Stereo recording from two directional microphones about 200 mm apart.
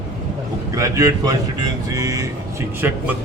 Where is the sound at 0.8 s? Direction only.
15° right (ahead or behind).